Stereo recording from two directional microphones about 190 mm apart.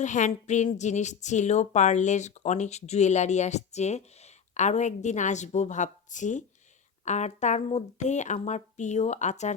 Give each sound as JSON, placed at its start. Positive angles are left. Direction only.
{"t": 0.0, "sound": "a woman's voice", "side_deg": 40}